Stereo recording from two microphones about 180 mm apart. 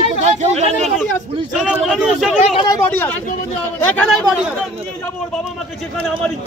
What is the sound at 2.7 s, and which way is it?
Speech, 10° left (ahead or behind).